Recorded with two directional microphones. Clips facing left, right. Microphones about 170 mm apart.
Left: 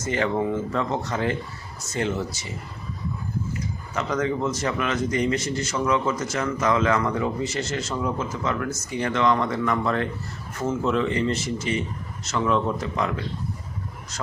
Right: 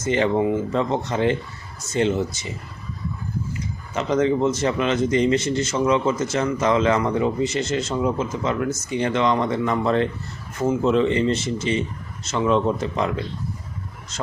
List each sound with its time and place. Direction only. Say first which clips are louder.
0.0 s a man's voice: right 4 dB; 20° right (ahead or behind)
3.9 s a man's voice: right 5 dB; 25° right (ahead or behind)